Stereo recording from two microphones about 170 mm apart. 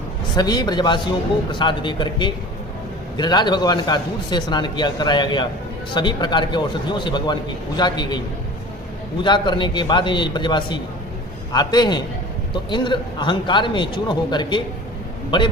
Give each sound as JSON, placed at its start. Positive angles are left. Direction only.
{"t": 0.3, "sound": "a man's voice", "side_deg": 25}
{"t": 9.2, "sound": "a man's voice", "side_deg": 25}